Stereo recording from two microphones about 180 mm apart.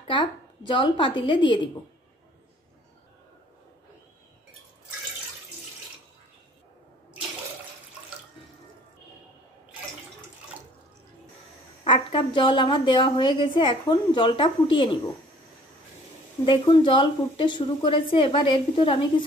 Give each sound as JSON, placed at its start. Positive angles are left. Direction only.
{"t": 0.0, "sound": "speech", "side_deg": 25}
{"t": 11.8, "sound": "a woman's voice", "side_deg": 30}
{"t": 16.4, "sound": "a woman's voice", "side_deg": 25}